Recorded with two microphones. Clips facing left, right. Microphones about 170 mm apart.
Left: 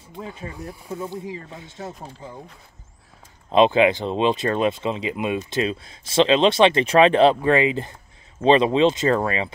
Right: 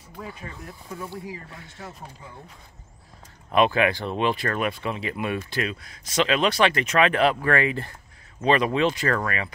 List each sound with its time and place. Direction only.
0.1 s speech: 25° left (ahead or behind)
3.5 s speech: 20° left (ahead or behind)